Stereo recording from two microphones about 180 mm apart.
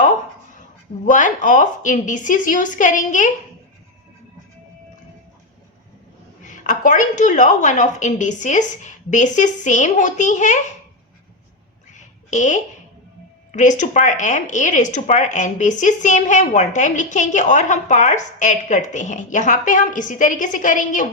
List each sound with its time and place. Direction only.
1.1 s speech: 45° left (ahead or behind)
6.4 s speech: 45° left (ahead or behind)
11.9 s a sound: 40° left (ahead or behind)
13.5 s speech: 45° left (ahead or behind)